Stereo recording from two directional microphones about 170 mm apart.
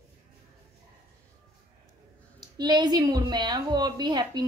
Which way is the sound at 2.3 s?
25° right (ahead or behind).